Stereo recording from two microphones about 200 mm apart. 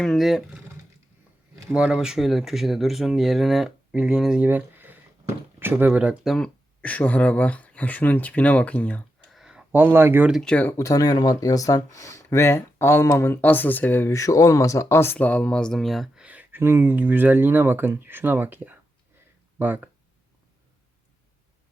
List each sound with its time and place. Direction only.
0.0 s speech: centre (ahead or behind)